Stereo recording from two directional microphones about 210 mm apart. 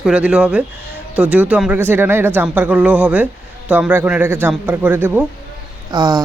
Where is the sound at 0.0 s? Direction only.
5° right (ahead or behind).